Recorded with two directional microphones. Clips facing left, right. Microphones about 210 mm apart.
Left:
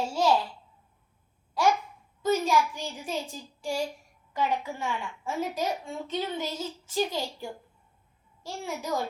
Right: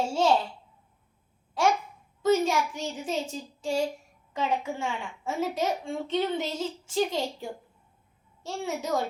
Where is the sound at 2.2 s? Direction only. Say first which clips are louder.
Right 1 dB; 25° right (ahead or behind).